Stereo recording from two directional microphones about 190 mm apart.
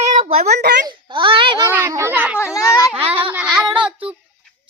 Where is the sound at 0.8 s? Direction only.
25° right (ahead or behind).